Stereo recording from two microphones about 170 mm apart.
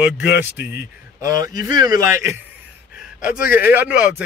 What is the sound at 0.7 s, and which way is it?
A man's voice, 15° right (ahead or behind).